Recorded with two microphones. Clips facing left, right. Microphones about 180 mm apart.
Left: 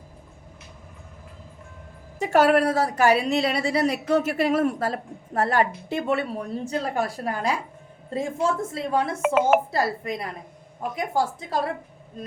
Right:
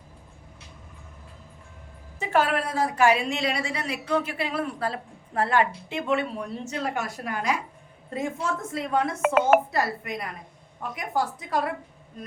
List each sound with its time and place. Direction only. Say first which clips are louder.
2.1 s a woman's voice: left 6 dB; 40° left (ahead or behind)
9.2 s speech: even; 5° left (ahead or behind)
9.7 s a woman's voice: left 2 dB; 30° left (ahead or behind)